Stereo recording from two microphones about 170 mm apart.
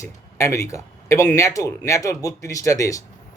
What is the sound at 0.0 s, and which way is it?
A man's voice, 15° left (ahead or behind).